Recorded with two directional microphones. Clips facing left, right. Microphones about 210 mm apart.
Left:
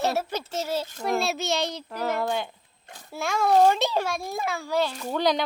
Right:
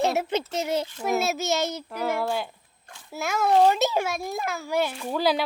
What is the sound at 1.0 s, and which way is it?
A child's voice, 5° right (ahead or behind).